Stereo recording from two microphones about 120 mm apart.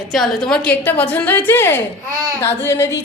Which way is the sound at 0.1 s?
5° left (ahead or behind).